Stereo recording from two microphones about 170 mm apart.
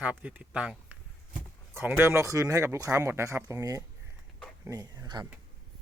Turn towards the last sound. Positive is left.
turn(degrees=-25)  # may be behind; listen again after turning